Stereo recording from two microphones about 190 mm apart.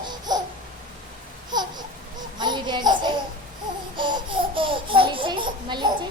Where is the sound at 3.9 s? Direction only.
25° right (ahead or behind).